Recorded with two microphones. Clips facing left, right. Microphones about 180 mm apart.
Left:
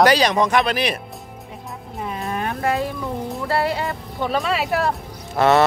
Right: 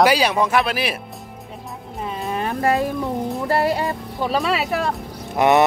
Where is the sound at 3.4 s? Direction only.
40° right (ahead or behind).